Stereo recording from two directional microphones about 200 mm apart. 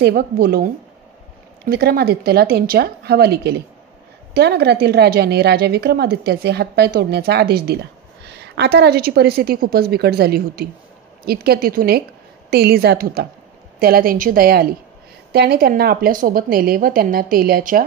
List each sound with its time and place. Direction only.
0.0 s a woman's voice: 50° right (ahead or behind)
1.7 s a woman's voice: 50° right (ahead or behind)